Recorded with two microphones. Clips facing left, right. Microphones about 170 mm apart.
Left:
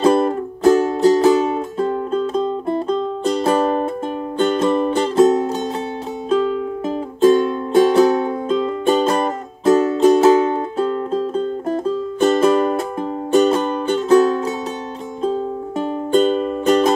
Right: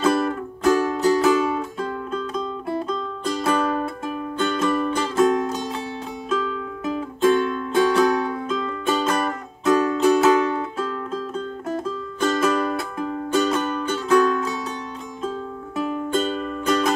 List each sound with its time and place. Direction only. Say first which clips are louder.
0.0 s music: left 6 dB; 30° left (ahead or behind)
15.8 s music: left 6 dB; 30° left (ahead or behind)